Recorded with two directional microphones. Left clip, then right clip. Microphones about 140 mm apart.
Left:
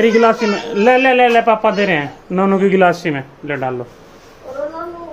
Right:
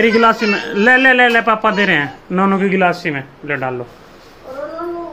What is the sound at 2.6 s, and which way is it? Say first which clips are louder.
Speech: left 2 dB; 30° left (ahead or behind).